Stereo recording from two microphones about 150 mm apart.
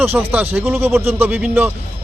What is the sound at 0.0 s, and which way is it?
Speech, 15° right (ahead or behind).